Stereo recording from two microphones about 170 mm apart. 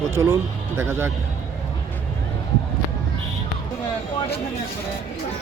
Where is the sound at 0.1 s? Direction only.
15° right (ahead or behind).